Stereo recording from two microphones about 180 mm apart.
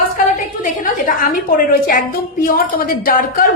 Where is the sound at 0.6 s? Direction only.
50° left (ahead or behind).